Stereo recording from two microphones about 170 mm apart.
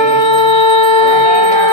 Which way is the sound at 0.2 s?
30° left (ahead or behind).